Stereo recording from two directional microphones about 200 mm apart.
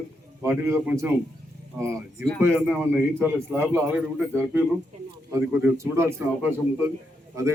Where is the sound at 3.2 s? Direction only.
10° right (ahead or behind).